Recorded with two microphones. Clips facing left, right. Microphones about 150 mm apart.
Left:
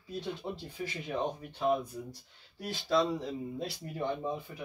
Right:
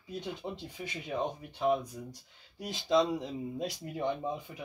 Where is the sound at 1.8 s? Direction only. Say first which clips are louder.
Left 2 dB; 15° right (ahead or behind).